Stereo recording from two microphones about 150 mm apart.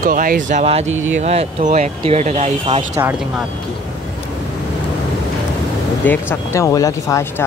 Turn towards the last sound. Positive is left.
turn(degrees=20)  # may be behind; listen again after turning